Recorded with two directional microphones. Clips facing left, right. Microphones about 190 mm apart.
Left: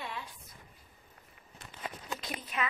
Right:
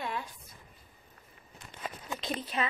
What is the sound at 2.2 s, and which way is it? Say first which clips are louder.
Speech: right 5 dB; 30° right (ahead or behind).